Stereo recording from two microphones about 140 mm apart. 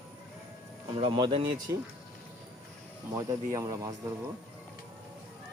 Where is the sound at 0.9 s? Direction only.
40° right (ahead or behind).